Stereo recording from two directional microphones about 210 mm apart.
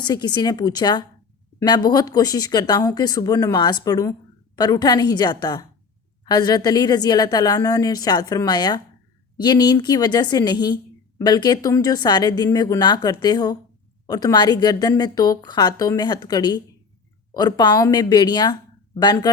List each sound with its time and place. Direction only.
0.0 s a woman's voice: 20° left (ahead or behind)